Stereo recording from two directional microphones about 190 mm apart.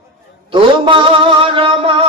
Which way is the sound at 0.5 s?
25° right (ahead or behind).